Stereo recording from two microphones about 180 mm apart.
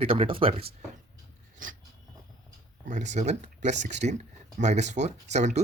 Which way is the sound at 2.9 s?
40° right (ahead or behind).